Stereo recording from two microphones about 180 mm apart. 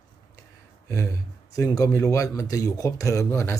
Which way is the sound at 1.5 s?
20° left (ahead or behind).